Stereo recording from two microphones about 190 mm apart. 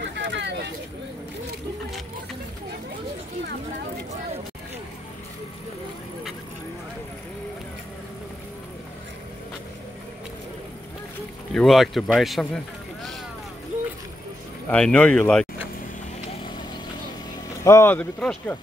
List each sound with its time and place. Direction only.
0.0 s vehicle: 70° right (ahead or behind)
11.5 s speech: centre (ahead or behind)
14.7 s speech: 5° left (ahead or behind)
17.6 s speech: 15° left (ahead or behind)